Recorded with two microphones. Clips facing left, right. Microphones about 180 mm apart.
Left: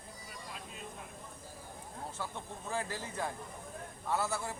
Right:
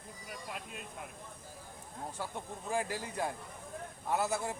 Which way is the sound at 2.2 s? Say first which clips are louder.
Right 2 dB; 15° right (ahead or behind).